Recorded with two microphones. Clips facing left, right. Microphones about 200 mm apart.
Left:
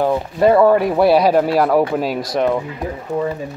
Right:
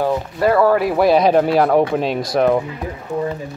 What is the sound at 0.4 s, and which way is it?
Speech, 20° left (ahead or behind).